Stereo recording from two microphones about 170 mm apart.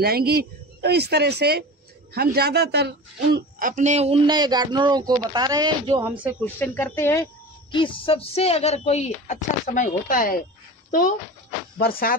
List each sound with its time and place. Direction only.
0.0 s a woman's voice: 65° right (ahead or behind); by 4.2 s 40° right (ahead or behind)
4.3 s speech: 25° right (ahead or behind)
6.4 s speech: 10° left (ahead or behind)
7.7 s speech: 30° left (ahead or behind); by 11.1 s 50° left (ahead or behind)